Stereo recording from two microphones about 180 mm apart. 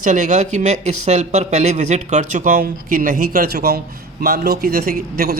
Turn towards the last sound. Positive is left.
turn(degrees=-60)  # may be behind; listen again after turning